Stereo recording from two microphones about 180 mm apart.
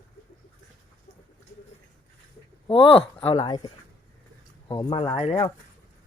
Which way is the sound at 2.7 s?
30° left (ahead or behind).